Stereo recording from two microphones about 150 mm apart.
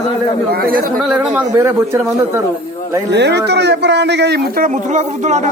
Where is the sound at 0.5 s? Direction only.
85° right.